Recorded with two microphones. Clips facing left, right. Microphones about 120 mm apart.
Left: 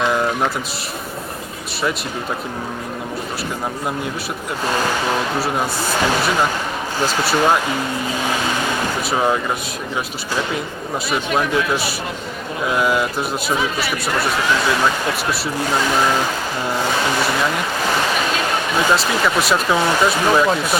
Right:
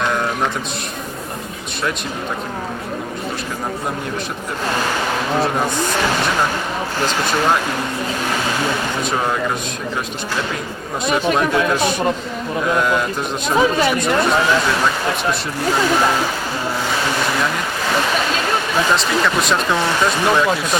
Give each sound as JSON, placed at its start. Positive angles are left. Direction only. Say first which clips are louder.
{"t": 0.0, "sound": "a sound", "louder": "left 2 dB", "side_deg": 5}
{"t": 7.0, "sound": "speech", "louder": "left 2 dB", "side_deg": 10}
{"t": 11.3, "sound": "speech", "louder": "right 2 dB", "side_deg": 5}
{"t": 13.6, "sound": "speech", "louder": "right 7 dB", "side_deg": -45}
{"t": 18.9, "sound": "speech", "louder": "even", "side_deg": 5}